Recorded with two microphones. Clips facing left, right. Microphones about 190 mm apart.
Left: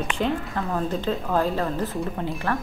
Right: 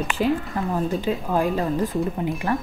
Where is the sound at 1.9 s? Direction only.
Centre (ahead or behind).